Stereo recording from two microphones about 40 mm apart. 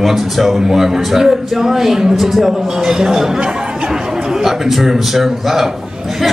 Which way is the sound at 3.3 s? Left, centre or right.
Right.